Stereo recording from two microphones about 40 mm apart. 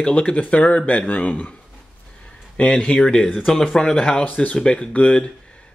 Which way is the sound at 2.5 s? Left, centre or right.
Left.